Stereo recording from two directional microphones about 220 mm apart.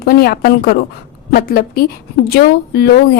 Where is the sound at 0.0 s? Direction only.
45° left (ahead or behind).